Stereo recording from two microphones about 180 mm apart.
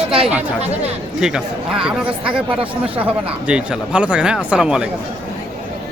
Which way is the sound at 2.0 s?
30° right (ahead or behind).